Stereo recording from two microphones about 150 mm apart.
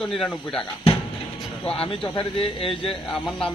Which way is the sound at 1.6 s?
35° left (ahead or behind).